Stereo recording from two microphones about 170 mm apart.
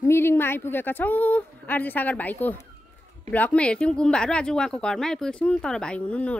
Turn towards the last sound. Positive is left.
turn(degrees=5)  # may be behind; listen again after turning